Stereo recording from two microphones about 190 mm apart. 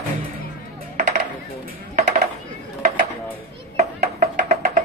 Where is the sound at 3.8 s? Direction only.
40° right (ahead or behind).